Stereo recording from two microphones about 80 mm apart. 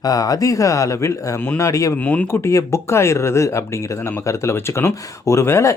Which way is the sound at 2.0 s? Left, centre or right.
Centre.